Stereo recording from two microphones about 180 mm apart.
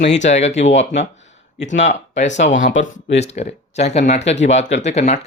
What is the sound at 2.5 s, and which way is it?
Speech, 90° left.